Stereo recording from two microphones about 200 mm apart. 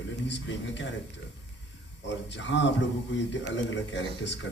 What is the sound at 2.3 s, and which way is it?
A man's voice, 65° left (ahead or behind).